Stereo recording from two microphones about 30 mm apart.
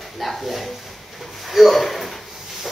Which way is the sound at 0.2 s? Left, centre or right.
Centre.